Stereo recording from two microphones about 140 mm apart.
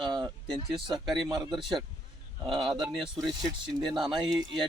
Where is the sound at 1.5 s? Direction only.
Centre (ahead or behind).